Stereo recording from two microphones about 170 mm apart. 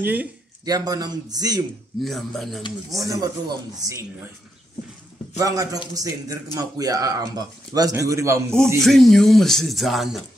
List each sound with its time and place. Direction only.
0.0 s speech: 10° right (ahead or behind)
0.7 s speech: 20° right (ahead or behind)
2.0 s speech: centre (ahead or behind)
3.0 s speech: 20° right (ahead or behind)
5.4 s speech: 20° right (ahead or behind)
8.8 s speech: centre (ahead or behind)